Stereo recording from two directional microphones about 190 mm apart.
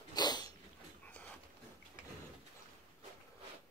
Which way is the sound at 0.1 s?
20° left (ahead or behind).